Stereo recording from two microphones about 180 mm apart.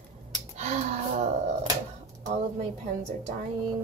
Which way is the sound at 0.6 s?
40° right (ahead or behind).